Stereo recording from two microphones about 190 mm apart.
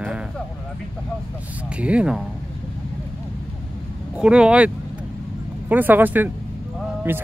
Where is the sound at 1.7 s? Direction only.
5° right (ahead or behind).